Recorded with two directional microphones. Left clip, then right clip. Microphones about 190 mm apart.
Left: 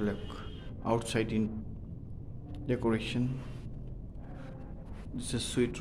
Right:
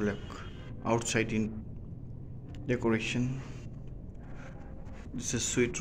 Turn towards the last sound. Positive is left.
turn(degrees=0)  # may be behind; listen again after turning